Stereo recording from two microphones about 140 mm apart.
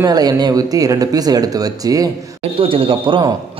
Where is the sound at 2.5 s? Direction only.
40° right (ahead or behind).